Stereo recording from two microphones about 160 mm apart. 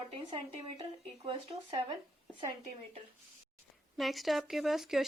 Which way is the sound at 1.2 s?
35° right (ahead or behind).